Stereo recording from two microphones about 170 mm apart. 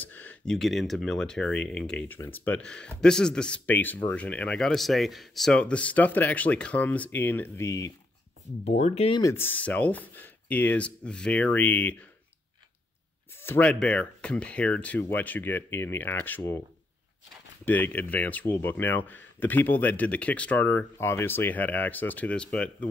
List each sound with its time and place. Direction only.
0.0 s speech: 10° left (ahead or behind)
8.6 s speech: 40° left (ahead or behind)
9.2 s speech: 15° left (ahead or behind)
13.4 s speech: 10° left (ahead or behind)
17.6 s speech: 10° left (ahead or behind)